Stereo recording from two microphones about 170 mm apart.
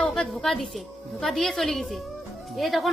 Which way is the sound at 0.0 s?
Centre (ahead or behind).